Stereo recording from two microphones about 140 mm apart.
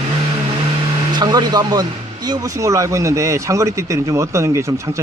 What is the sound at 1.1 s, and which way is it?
Speech, 30° right (ahead or behind).